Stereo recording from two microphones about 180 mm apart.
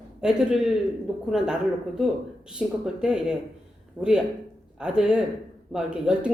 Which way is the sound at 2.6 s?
5° right (ahead or behind).